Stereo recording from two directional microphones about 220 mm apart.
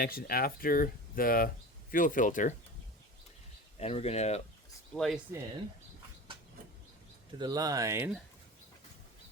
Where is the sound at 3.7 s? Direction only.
30° left (ahead or behind).